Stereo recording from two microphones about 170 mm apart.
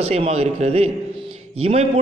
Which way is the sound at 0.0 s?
35° right (ahead or behind).